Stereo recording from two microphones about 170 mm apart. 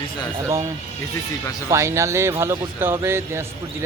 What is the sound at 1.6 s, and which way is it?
Speech, 15° right (ahead or behind).